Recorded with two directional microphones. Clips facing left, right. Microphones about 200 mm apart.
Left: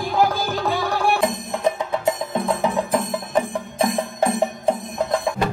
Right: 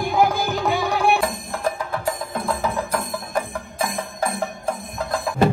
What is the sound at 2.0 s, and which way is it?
Music, 20° left (ahead or behind).